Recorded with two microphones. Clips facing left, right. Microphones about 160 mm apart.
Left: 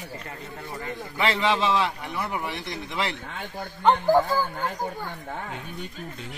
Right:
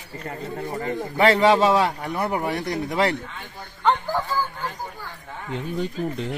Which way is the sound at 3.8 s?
20° left (ahead or behind).